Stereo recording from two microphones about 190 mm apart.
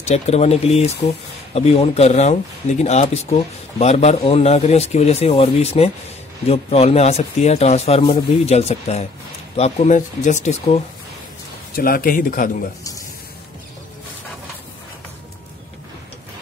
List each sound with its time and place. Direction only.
0.0 s speech: 35° left (ahead or behind)
11.7 s speech: 50° left (ahead or behind)